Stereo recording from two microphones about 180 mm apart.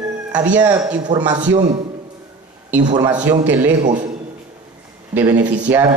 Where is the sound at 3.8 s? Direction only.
45° right (ahead or behind).